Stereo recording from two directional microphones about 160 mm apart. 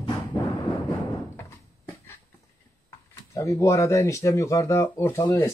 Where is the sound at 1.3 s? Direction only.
15° left (ahead or behind).